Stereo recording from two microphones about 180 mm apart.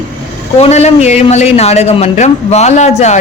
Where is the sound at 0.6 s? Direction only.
35° left (ahead or behind).